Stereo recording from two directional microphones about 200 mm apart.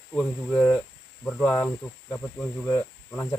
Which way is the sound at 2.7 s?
15° left (ahead or behind).